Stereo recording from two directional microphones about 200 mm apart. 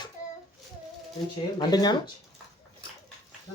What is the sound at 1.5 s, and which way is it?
Speech, 20° left (ahead or behind).